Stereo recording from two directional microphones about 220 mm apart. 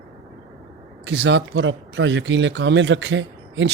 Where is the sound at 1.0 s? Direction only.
55° right (ahead or behind).